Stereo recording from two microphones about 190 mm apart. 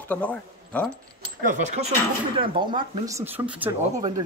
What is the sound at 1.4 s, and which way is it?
Speech, 40° right (ahead or behind).